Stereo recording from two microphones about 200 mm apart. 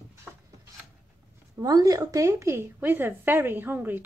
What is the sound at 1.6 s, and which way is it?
A woman's voice, 20° right (ahead or behind).